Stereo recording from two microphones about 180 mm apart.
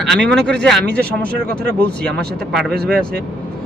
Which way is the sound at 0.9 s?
60° right (ahead or behind).